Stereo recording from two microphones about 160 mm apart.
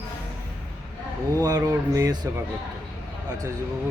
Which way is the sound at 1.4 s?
25° right (ahead or behind).